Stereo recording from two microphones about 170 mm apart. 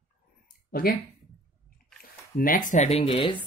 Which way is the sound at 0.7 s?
60° left (ahead or behind).